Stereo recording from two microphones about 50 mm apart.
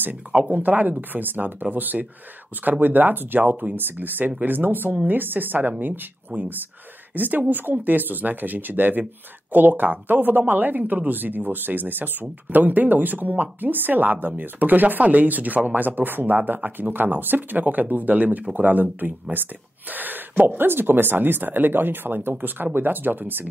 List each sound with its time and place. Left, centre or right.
0.5 s speech: right